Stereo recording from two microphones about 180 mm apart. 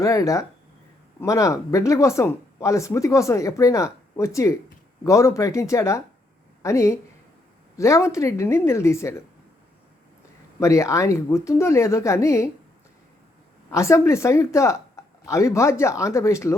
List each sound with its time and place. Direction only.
0.0 s speech: 20° left (ahead or behind)
10.6 s speech: 15° left (ahead or behind)
13.7 s speech: 15° left (ahead or behind)